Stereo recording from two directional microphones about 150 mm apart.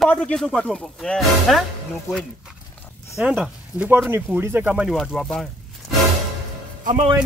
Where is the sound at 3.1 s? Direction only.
5° right (ahead or behind).